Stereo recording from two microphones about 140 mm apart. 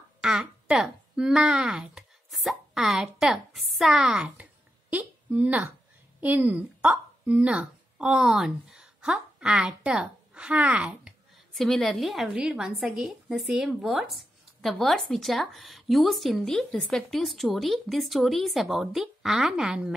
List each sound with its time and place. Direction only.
0.2 s a woman's voice: 5° right (ahead or behind)
11.5 s a woman's voice: 5° left (ahead or behind)